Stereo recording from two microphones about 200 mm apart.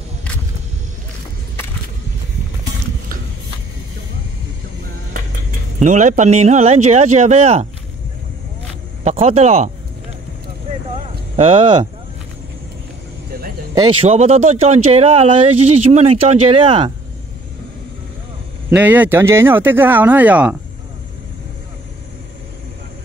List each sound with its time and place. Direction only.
5.8 s speech: 35° right (ahead or behind)
9.0 s speech: 30° right (ahead or behind)
11.3 s speech: 25° right (ahead or behind)
14.0 s speech: 30° right (ahead or behind)
18.7 s speech: 10° right (ahead or behind)